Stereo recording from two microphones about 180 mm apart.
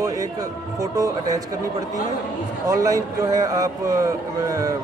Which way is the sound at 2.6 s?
20° right (ahead or behind).